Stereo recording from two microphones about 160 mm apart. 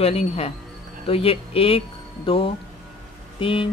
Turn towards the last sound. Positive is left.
turn(degrees=35)  # may be behind; listen again after turning